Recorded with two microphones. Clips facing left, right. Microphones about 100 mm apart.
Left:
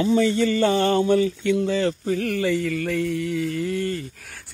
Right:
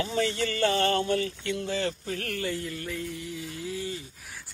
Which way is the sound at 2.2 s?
90° left.